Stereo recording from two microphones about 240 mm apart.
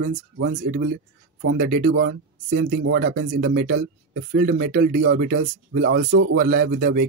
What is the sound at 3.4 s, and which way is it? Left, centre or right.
Speech, right.